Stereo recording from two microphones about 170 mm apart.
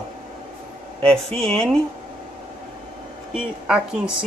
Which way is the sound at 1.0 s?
5° left (ahead or behind).